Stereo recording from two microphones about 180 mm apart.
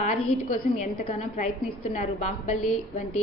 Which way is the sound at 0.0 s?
40° left (ahead or behind).